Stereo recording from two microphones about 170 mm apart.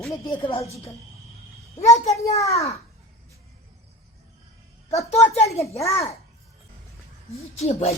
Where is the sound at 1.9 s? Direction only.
40° left (ahead or behind).